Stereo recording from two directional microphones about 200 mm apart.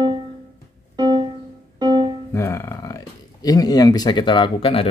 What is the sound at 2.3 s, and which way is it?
Speech, 15° left (ahead or behind).